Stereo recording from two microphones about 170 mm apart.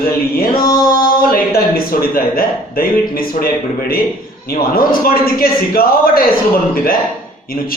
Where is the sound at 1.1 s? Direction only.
60° left (ahead or behind).